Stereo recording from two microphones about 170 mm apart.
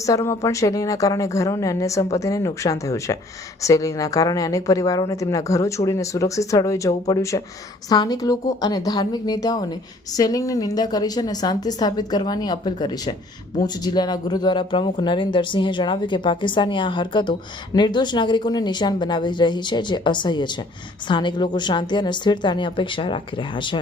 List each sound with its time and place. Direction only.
0.0 s a woman's voice: 20° left (ahead or behind)